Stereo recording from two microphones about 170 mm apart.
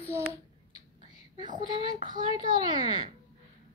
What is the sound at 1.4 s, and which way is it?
Speech, 25° right (ahead or behind).